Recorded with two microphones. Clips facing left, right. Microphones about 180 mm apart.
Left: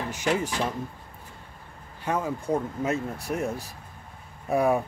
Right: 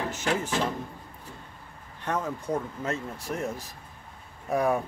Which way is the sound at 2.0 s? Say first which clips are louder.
Left 3 dB; 10° left (ahead or behind).